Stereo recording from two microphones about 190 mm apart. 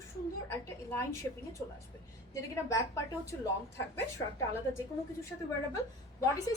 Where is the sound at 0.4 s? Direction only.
10° left (ahead or behind).